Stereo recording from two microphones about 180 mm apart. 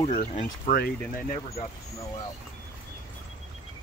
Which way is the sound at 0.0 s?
45° left (ahead or behind).